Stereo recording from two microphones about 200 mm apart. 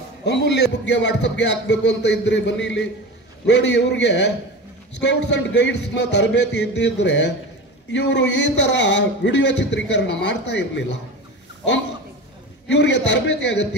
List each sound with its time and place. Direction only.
0.2 s speech: 55° left (ahead or behind)
12.6 s speech: 60° left (ahead or behind)